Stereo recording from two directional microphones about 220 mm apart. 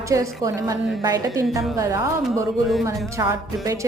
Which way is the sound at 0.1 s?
15° right (ahead or behind).